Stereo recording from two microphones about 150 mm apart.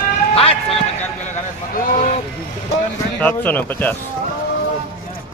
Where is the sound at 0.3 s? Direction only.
40° left (ahead or behind).